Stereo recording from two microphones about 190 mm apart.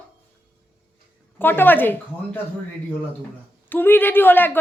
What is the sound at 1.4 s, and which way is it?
Speech, 10° left (ahead or behind).